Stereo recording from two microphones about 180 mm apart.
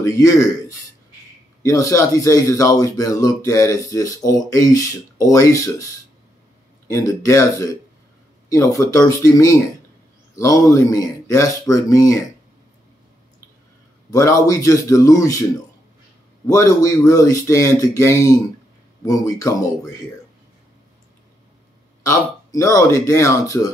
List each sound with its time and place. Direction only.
0.1 s speech: 15° left (ahead or behind)
1.6 s speech: 15° left (ahead or behind)
6.9 s speech: 15° left (ahead or behind)
14.1 s speech: 20° left (ahead or behind)
16.4 s speech: 20° left (ahead or behind)
22.0 s speech: 20° left (ahead or behind)